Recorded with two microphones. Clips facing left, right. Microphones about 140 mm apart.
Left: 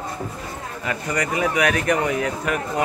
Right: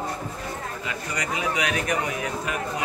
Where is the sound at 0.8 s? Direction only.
55° left (ahead or behind).